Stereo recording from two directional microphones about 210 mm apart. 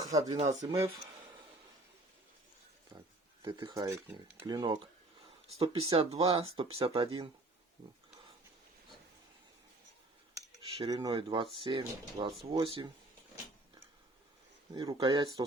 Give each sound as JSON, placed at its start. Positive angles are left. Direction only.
{"t": 0.0, "sound": "speech", "side_deg": -15}
{"t": 2.9, "sound": "speech", "side_deg": -20}
{"t": 10.3, "sound": "cutlery", "side_deg": -15}
{"t": 11.5, "sound": "speech", "side_deg": -25}
{"t": 14.7, "sound": "speech", "side_deg": -15}